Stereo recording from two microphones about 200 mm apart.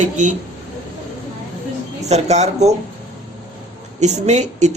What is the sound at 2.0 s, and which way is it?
Speech, 35° right (ahead or behind).